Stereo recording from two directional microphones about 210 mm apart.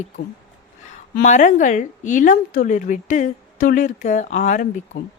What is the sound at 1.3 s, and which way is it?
A woman's voice, 35° left (ahead or behind).